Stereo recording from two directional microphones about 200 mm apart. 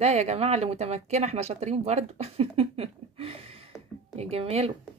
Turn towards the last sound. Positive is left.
turn(degrees=-30)  # may be behind; listen again after turning